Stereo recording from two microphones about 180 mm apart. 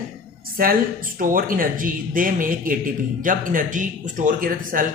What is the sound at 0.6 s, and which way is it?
Speech, 50° right (ahead or behind).